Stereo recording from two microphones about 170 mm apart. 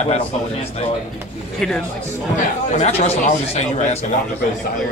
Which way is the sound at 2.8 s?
35° left (ahead or behind).